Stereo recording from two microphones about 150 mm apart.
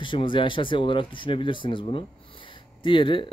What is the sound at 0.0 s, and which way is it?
Speech, 35° left (ahead or behind).